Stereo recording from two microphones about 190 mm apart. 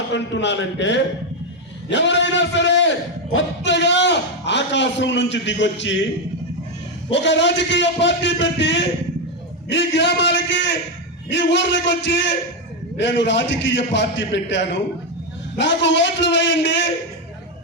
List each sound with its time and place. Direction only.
0.1 s a man's voice: 70° left (ahead or behind)
7.1 s a man's voice: 70° left (ahead or behind)